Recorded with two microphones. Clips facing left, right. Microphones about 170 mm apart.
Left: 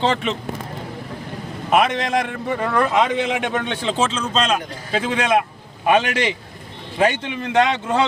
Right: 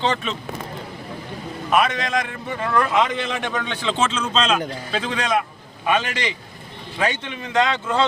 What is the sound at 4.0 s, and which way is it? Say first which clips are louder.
Speech: left 1 dB; 30° left (ahead or behind).